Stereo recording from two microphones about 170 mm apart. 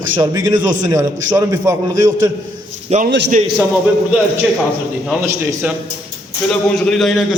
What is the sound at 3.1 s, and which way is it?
Speech, 90° right.